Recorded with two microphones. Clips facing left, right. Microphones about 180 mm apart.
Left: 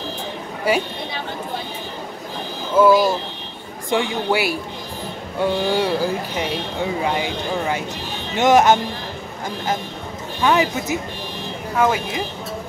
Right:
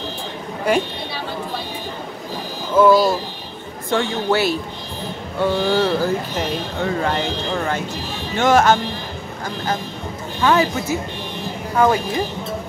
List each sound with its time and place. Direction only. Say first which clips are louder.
2.7 s speech: right 1 dB; 10° left (ahead or behind)
10.4 s speech: right 1 dB; 15° left (ahead or behind)
11.7 s speech: right 2 dB; 5° left (ahead or behind)